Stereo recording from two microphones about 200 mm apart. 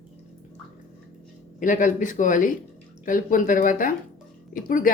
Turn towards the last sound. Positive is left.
turn(degrees=45)  # may be behind; listen again after turning